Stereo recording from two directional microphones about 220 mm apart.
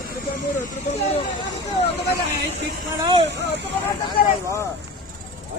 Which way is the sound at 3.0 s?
20° right (ahead or behind).